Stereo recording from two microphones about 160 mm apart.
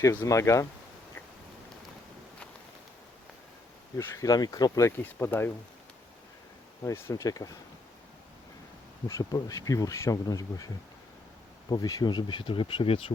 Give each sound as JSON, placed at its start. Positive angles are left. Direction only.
{"t": 0.0, "sound": "speech", "side_deg": 20}
{"t": 3.9, "sound": "speech", "side_deg": 20}
{"t": 6.8, "sound": "speech", "side_deg": 15}
{"t": 9.0, "sound": "speech", "side_deg": 20}
{"t": 11.7, "sound": "speech", "side_deg": 25}